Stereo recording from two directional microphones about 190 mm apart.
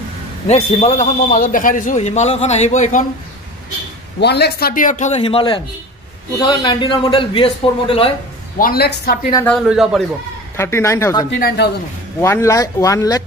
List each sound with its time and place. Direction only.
0.5 s a man's voice: 35° left (ahead or behind)
4.2 s a man's voice: 60° left (ahead or behind); by 8.1 s 30° left (ahead or behind)
8.5 s a woman's voice: 50° left (ahead or behind)
9.5 s a man's voice: centre (ahead or behind)
10.5 s speech: 15° left (ahead or behind)
11.3 s a woman's voice: 55° left (ahead or behind)
12.2 s speech: 15° left (ahead or behind)